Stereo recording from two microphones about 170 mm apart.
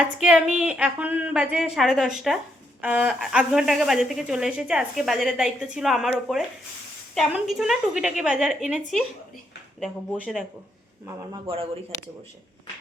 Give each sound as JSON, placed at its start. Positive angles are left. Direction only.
{"t": 0.0, "sound": "speech", "side_deg": -5}
{"t": 9.8, "sound": "speech", "side_deg": -5}
{"t": 11.4, "sound": "speech", "side_deg": -35}